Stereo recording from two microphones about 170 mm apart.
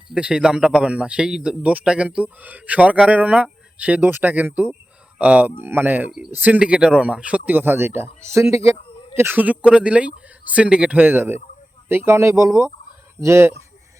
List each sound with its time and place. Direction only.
0.1 s a man's voice: 5° right (ahead or behind)